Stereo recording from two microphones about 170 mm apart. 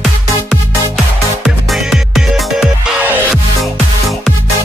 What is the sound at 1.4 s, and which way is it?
Music, centre (ahead or behind).